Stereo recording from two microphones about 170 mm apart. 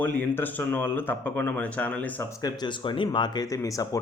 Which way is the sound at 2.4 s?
25° left (ahead or behind).